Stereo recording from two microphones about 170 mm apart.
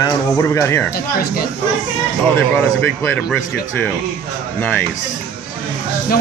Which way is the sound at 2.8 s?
10° left (ahead or behind).